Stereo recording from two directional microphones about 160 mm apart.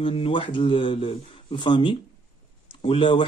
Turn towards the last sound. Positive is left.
turn(degrees=30)  # may be behind; listen again after turning